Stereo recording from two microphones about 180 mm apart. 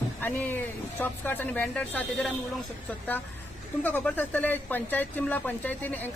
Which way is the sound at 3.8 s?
10° left (ahead or behind).